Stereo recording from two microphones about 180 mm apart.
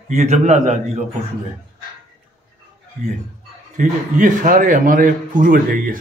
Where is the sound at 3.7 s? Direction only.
45° right (ahead or behind).